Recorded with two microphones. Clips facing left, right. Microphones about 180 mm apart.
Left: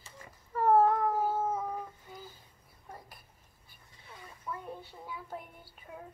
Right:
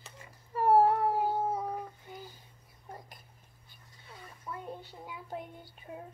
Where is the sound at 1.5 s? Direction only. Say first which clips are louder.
Even; 15° right (ahead or behind).